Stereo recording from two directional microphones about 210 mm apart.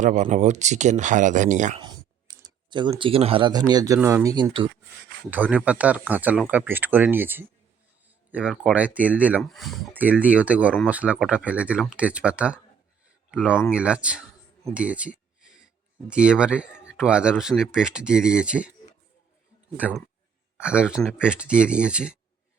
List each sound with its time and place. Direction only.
0.0 s speech: 35° right (ahead or behind)
1.8 s a sound: 20° right (ahead or behind)
3.7 s speech: 15° right (ahead or behind)
5.3 s speech: 5° right (ahead or behind)
13.7 s a sound: 5° right (ahead or behind)
16.0 s speech: 5° right (ahead or behind)
19.7 s speech: 5° right (ahead or behind)